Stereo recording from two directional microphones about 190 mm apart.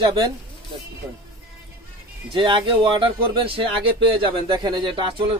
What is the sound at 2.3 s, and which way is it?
Speech, 25° right (ahead or behind).